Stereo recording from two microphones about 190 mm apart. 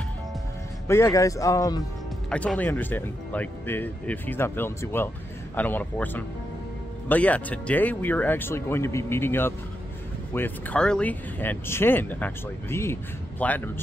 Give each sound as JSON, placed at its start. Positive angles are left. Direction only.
{"t": 0.8, "sound": "speech", "side_deg": 15}
{"t": 2.2, "sound": "speech", "side_deg": 5}